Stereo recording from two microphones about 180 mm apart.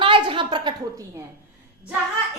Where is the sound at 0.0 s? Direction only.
30° right (ahead or behind).